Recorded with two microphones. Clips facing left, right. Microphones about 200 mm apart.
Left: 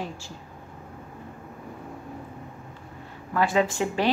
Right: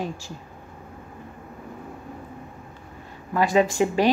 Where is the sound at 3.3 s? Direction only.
15° right (ahead or behind).